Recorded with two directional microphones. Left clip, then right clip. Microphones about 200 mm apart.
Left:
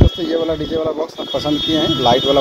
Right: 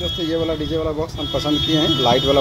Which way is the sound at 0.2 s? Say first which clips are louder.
Left 3 dB; 5° left (ahead or behind).